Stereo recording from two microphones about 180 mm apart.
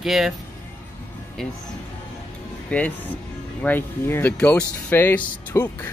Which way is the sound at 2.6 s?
10° left (ahead or behind).